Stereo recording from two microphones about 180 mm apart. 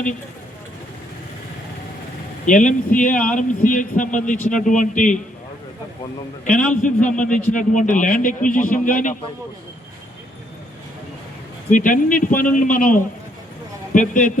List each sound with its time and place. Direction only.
2.5 s a man's voice: 45° left (ahead or behind)
6.5 s a man's voice: 5° left (ahead or behind)
6.8 s a man's voice: 45° left (ahead or behind)
11.7 s a man's voice: 45° left (ahead or behind)